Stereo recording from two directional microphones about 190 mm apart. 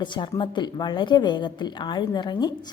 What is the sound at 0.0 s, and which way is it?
A woman's voice, 25° left (ahead or behind).